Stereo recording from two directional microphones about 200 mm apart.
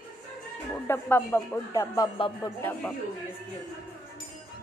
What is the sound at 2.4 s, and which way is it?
Speech, 10° left (ahead or behind).